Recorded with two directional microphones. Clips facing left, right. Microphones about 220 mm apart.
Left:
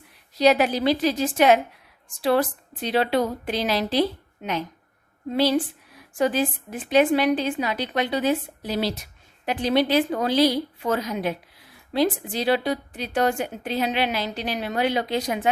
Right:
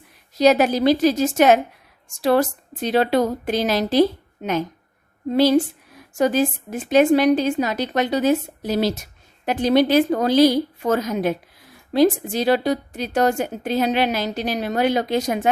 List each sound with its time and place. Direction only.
0.3 s a woman's voice: 45° right (ahead or behind)
5.3 s a woman's voice: 45° right (ahead or behind)